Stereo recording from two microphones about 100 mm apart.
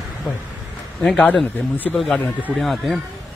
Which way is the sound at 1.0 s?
15° left (ahead or behind).